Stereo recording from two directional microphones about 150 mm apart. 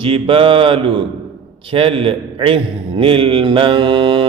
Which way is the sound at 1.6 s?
35° right (ahead or behind).